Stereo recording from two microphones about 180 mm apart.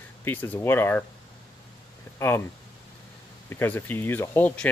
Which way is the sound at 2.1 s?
15° left (ahead or behind).